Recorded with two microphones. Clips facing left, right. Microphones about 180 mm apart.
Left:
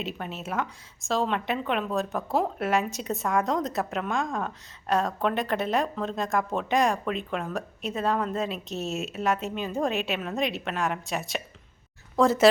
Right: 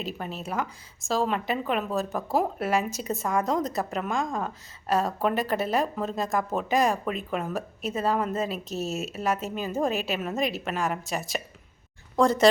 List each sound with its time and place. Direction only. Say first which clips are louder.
0.0 s a woman's voice: even; centre (ahead or behind)